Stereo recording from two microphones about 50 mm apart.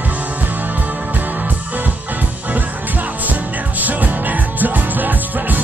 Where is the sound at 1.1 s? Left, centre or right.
Right.